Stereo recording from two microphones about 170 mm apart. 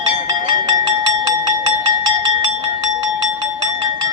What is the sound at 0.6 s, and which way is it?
Music, 25° right (ahead or behind).